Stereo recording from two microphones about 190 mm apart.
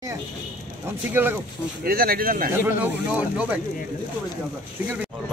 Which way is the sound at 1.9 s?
50° right (ahead or behind).